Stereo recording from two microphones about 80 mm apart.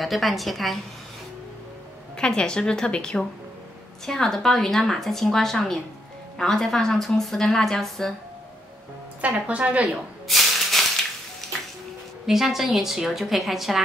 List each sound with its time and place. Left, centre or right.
0.0 s a woman's voice: centre
2.1 s a woman's voice: centre
9.2 s speech: centre
10.2 s a sound: centre
11.4 s music: centre
12.3 s a woman's voice: centre